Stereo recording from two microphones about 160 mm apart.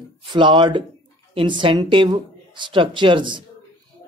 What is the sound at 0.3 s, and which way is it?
Speech, 30° right (ahead or behind).